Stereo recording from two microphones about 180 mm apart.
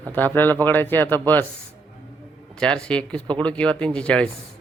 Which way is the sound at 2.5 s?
5° left (ahead or behind).